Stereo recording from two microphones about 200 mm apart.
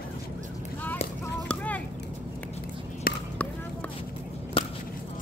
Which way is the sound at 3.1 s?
50° left (ahead or behind).